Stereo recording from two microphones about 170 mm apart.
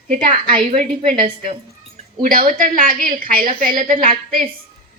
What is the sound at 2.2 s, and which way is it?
A woman's voice, 55° right (ahead or behind).